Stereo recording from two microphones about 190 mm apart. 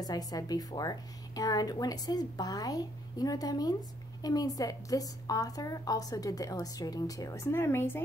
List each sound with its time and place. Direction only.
0.0 s a woman's voice: 20° left (ahead or behind)